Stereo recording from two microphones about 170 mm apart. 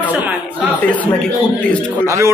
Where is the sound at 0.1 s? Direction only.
10° right (ahead or behind).